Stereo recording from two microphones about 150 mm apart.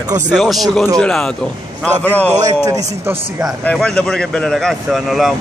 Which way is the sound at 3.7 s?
5° left (ahead or behind).